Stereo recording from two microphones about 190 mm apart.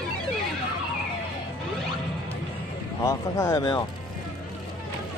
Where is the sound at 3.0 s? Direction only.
15° left (ahead or behind).